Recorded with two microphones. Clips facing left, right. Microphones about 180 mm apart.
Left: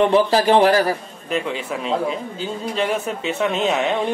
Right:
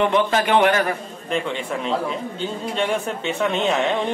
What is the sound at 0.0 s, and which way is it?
Speech, 35° left (ahead or behind).